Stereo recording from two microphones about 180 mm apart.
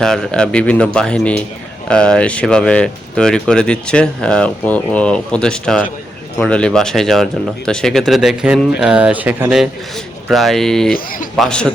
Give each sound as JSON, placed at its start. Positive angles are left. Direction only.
{"t": 0.0, "sound": "speech", "side_deg": 5}
{"t": 10.9, "sound": "speech", "side_deg": 50}
{"t": 11.3, "sound": "speech", "side_deg": 5}